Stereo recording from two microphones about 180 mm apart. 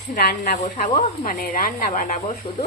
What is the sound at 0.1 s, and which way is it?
Speech, 60° left (ahead or behind).